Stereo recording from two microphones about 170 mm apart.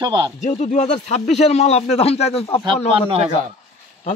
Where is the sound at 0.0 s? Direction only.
25° right (ahead or behind).